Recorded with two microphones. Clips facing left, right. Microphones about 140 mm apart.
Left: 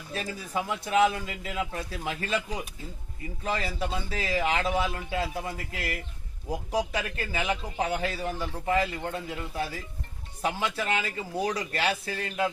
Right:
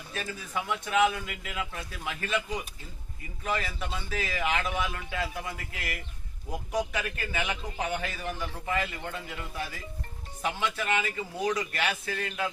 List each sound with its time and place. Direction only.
0.1 s a man's voice: 35° left (ahead or behind)
3.4 s a man's voice: 30° left (ahead or behind)